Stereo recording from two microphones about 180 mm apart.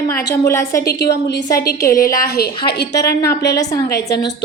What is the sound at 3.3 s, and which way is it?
Speech, 65° left (ahead or behind).